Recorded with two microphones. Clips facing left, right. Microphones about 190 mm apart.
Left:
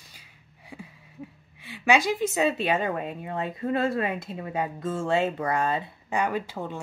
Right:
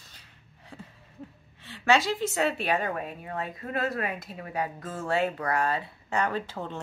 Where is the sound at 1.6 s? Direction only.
10° left (ahead or behind).